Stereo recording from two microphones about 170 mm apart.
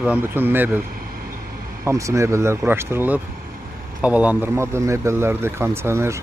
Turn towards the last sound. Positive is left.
turn(degrees=-15)  # may be behind; listen again after turning